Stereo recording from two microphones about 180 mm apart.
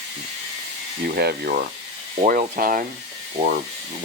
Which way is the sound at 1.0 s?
60° right (ahead or behind).